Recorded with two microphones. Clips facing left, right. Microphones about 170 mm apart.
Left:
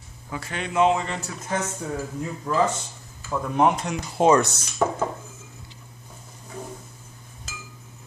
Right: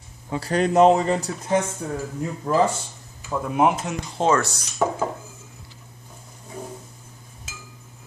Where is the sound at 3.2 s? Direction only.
10° right (ahead or behind).